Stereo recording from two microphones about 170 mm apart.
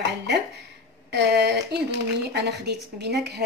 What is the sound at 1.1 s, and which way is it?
A woman's voice, 80° right.